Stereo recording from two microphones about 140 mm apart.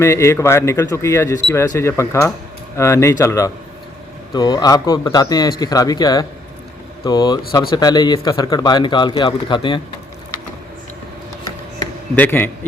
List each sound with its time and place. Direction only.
0.0 s speech: 20° left (ahead or behind)
12.1 s a man's voice: 15° left (ahead or behind)